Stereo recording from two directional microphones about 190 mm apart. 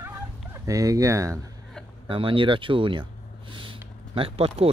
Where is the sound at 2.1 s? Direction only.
25° right (ahead or behind).